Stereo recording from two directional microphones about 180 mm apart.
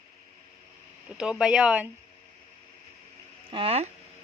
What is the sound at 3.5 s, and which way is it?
Speech, 30° right (ahead or behind).